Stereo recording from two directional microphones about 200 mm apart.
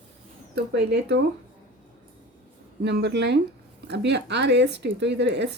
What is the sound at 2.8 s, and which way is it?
Speech, 60° right (ahead or behind).